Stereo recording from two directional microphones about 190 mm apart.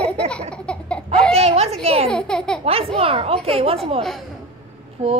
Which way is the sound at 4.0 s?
Centre (ahead or behind).